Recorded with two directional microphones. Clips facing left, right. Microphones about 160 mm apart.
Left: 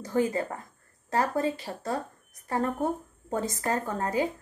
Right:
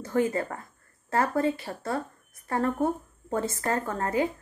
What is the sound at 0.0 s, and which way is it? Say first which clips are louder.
A woman's voice: right 1 dB; 15° left (ahead or behind).